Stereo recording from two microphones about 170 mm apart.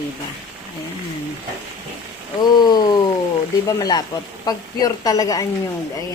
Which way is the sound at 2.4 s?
25° left (ahead or behind).